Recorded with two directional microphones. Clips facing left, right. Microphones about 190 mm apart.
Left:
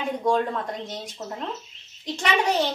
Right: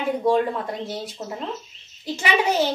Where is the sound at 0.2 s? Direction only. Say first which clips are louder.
Right 2 dB; 5° right (ahead or behind).